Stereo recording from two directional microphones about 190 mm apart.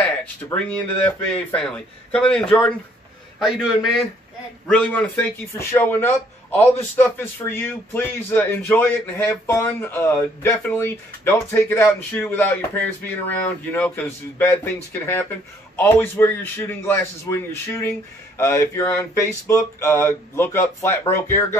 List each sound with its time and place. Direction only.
0.2 s a man's voice: 5° left (ahead or behind)